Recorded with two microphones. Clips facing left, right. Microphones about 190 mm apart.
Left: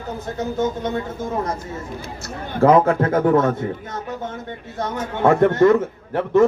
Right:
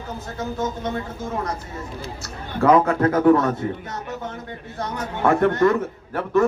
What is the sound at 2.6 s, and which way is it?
Speech, 30° left (ahead or behind).